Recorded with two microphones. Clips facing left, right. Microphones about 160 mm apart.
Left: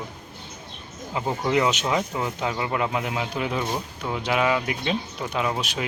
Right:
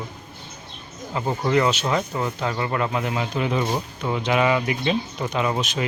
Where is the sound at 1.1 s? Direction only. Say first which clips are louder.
Right 2 dB; 10° left (ahead or behind).